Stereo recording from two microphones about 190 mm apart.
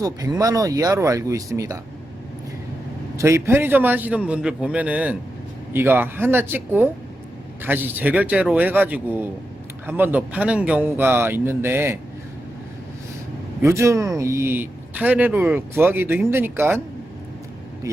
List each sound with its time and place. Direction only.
0.0 s speech: 20° right (ahead or behind)
3.2 s speech: 15° right (ahead or behind)
13.6 s speech: 15° right (ahead or behind)
17.9 s speech: 15° right (ahead or behind)